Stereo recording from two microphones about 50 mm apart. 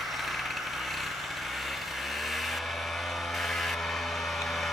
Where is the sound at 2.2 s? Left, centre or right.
Centre.